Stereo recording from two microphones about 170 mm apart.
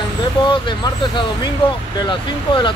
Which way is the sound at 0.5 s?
30° left (ahead or behind).